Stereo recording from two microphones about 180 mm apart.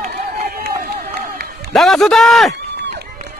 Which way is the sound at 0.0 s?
55° right (ahead or behind).